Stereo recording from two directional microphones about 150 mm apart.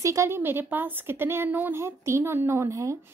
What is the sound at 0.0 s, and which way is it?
A woman's voice, 20° right (ahead or behind).